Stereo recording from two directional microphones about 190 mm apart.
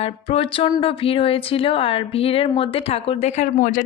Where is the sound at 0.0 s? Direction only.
30° left (ahead or behind).